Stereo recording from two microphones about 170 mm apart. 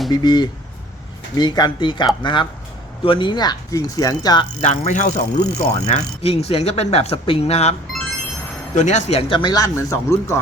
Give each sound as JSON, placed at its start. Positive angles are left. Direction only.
{"t": 0.1, "sound": "speech", "side_deg": 25}
{"t": 4.6, "sound": "speech", "side_deg": 45}